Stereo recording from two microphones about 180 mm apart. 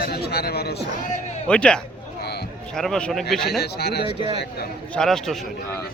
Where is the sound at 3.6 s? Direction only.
65° left (ahead or behind).